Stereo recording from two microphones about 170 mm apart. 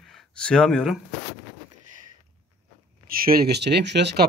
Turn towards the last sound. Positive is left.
turn(degrees=-85)